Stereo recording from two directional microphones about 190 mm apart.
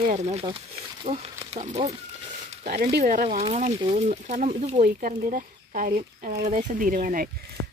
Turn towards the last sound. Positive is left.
turn(degrees=-45)  # may be behind; listen again after turning